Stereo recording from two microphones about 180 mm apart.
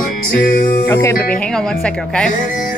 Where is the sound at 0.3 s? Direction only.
55° left (ahead or behind).